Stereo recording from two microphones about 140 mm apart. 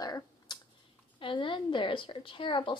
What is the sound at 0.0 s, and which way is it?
Finger snapping, 30° left (ahead or behind).